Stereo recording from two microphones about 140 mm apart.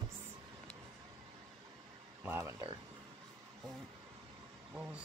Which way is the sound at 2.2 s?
20° right (ahead or behind).